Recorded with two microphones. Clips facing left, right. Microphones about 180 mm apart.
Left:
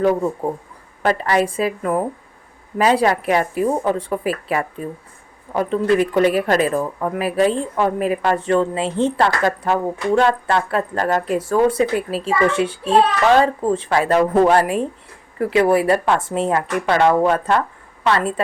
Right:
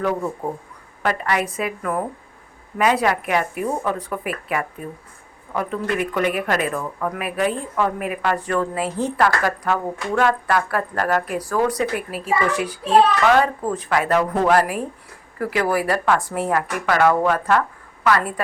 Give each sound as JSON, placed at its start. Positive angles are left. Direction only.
{"t": 1.0, "sound": "speech", "side_deg": 30}